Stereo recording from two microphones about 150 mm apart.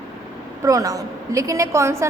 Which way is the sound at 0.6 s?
25° right (ahead or behind).